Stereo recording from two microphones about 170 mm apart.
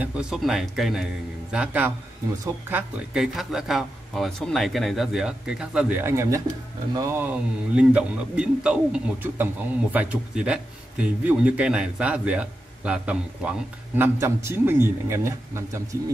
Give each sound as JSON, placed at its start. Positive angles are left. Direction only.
{"t": 0.0, "sound": "a man's voice", "side_deg": -5}